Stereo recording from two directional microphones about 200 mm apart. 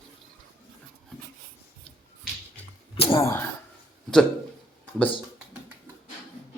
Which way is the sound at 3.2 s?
15° left (ahead or behind).